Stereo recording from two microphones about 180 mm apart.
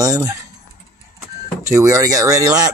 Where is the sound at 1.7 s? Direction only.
15° right (ahead or behind).